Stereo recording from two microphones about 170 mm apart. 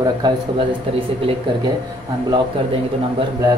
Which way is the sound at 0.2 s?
30° right (ahead or behind).